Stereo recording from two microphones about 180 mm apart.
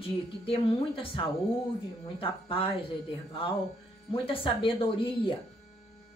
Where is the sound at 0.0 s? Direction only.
30° left (ahead or behind).